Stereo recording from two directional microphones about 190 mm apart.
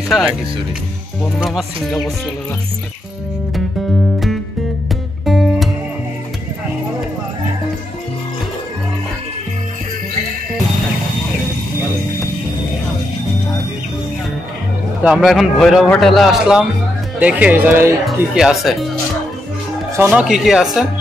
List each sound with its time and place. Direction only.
0.1 s a man's voice: 5° right (ahead or behind)
1.4 s a man's voice: centre (ahead or behind)
5.2 s music: centre (ahead or behind)
15.0 s a man's voice: centre (ahead or behind)
20.1 s a man's voice: 5° right (ahead or behind)